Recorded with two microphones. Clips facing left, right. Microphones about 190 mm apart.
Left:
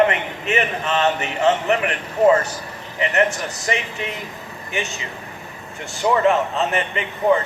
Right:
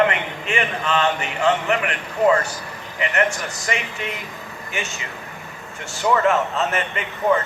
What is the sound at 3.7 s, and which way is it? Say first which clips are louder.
A man's voice: left 2 dB; 35° left (ahead or behind).